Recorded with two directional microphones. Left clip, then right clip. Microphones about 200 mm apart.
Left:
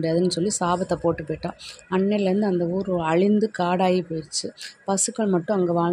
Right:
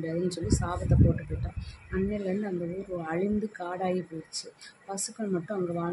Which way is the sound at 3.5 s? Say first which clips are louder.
Left 10 dB; 45° left (ahead or behind).